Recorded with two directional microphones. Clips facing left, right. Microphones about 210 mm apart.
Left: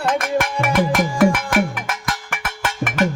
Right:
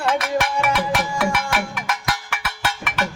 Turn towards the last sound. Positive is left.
turn(degrees=50)  # may be behind; listen again after turning